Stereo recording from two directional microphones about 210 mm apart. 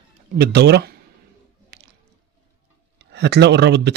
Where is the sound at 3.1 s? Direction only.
55° right (ahead or behind).